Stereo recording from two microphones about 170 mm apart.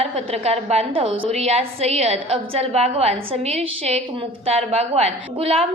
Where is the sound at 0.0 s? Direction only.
35° right (ahead or behind).